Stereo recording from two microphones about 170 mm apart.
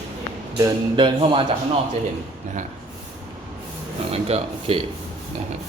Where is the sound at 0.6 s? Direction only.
30° right (ahead or behind).